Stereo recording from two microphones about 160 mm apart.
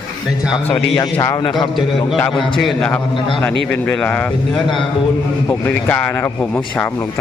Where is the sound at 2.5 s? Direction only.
5° left (ahead or behind).